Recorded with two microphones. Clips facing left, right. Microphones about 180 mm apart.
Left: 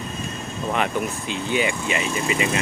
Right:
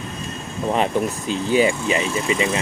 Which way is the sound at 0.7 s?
30° right (ahead or behind).